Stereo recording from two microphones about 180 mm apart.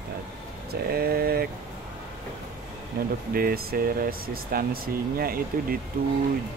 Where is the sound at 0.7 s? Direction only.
60° right (ahead or behind).